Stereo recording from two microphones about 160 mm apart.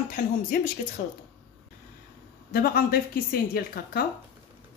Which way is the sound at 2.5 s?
65° left (ahead or behind).